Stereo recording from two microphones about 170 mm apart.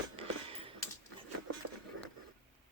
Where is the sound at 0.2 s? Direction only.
35° right (ahead or behind).